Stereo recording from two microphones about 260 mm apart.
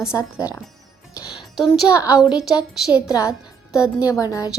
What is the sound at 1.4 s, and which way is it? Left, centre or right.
A woman's voice, centre.